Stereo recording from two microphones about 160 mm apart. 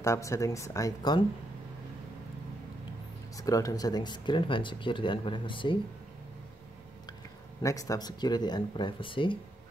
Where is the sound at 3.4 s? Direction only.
20° left (ahead or behind).